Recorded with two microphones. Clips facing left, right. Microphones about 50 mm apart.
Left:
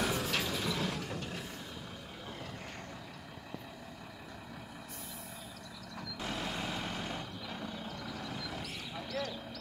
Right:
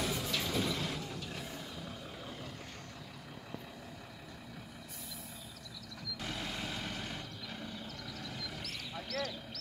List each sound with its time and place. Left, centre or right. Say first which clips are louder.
0.0 s vehicle: left 3 dB; left
0.5 s vehicle: even; centre
6.2 s vehicle: left 3 dB; centre